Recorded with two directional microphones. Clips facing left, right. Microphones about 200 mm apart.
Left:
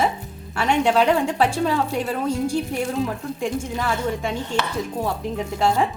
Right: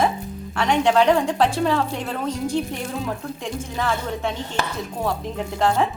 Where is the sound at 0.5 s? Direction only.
5° left (ahead or behind).